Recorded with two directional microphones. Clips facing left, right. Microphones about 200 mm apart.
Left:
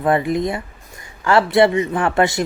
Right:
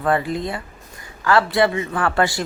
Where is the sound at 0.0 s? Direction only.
20° left (ahead or behind).